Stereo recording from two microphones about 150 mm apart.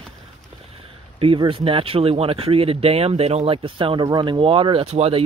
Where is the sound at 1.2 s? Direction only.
35° right (ahead or behind).